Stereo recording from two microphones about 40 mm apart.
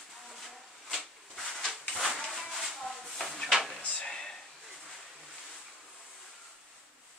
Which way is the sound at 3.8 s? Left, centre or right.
Left.